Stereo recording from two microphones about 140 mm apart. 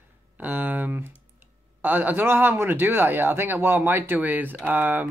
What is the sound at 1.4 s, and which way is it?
Speech, 15° right (ahead or behind).